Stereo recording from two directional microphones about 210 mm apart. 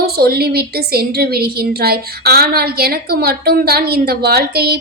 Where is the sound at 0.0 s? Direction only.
45° right (ahead or behind).